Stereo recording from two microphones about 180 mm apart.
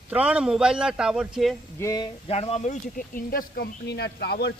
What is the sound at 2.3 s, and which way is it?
Speech, 35° left (ahead or behind).